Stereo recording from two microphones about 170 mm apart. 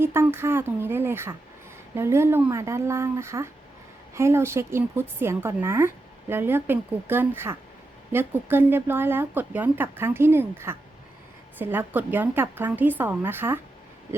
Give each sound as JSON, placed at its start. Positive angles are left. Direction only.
{"t": 0.0, "sound": "a woman's voice", "side_deg": -15}